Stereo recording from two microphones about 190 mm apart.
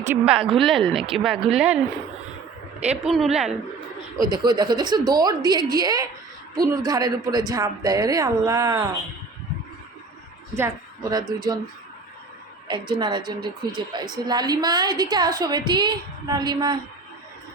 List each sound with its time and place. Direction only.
0.1 s speech: 5° right (ahead or behind)
2.8 s speech: 5° right (ahead or behind)
4.2 s a woman's voice: 20° right (ahead or behind)
10.6 s a woman's voice: 20° right (ahead or behind)
12.6 s a woman's voice: 25° right (ahead or behind)